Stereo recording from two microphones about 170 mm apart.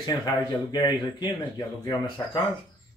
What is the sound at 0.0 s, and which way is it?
Speech, 25° left (ahead or behind).